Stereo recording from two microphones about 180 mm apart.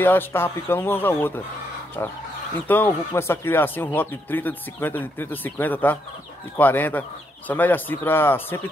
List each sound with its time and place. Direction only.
0.0 s speech: 10° left (ahead or behind)